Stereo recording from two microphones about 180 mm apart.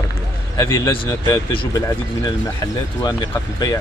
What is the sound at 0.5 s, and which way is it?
Speech, 20° left (ahead or behind).